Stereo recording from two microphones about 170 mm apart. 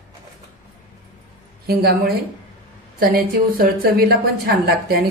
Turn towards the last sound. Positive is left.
turn(degrees=-65)  # may be behind; listen again after turning